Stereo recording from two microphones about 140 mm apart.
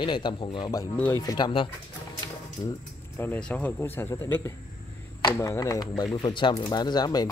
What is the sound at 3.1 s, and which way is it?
A man's voice, 15° left (ahead or behind).